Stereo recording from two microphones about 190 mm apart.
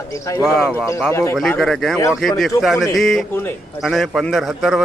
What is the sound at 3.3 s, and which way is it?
Speech, 10° left (ahead or behind).